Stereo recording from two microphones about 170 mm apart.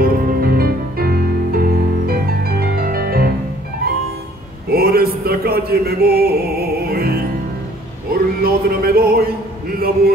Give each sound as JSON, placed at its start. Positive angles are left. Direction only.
{"t": 0.0, "sound": "music", "side_deg": -55}
{"t": 4.6, "sound": "music", "side_deg": -65}
{"t": 8.1, "sound": "a sound", "side_deg": -60}